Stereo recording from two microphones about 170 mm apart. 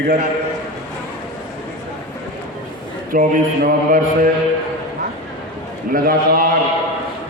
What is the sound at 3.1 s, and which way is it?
Mantra, 50° right (ahead or behind).